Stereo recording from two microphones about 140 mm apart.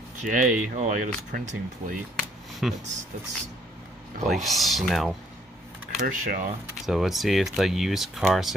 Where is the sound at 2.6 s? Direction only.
Centre (ahead or behind).